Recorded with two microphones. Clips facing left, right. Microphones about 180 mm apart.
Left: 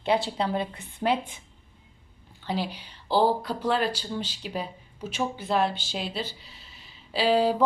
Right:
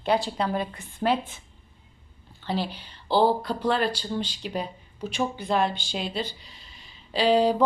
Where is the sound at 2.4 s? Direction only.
10° left (ahead or behind).